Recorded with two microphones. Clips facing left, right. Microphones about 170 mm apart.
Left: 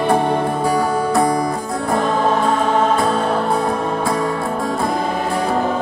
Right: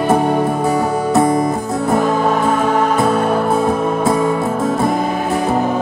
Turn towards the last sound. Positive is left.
turn(degrees=0)  # may be behind; listen again after turning